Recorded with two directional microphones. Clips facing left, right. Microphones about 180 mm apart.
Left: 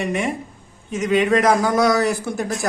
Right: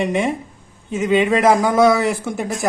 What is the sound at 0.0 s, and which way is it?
Speech, 25° right (ahead or behind).